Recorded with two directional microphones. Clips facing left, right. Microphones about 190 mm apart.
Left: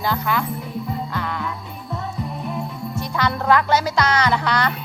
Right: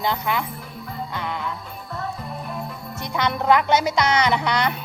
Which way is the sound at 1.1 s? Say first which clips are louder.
Left 2 dB; 20° right (ahead or behind).